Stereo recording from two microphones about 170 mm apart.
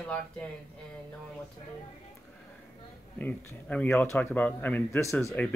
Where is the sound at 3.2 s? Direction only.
10° left (ahead or behind).